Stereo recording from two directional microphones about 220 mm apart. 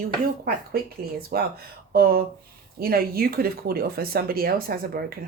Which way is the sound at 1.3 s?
45° right (ahead or behind).